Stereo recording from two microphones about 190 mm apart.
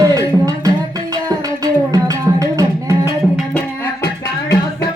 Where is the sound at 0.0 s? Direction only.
20° right (ahead or behind).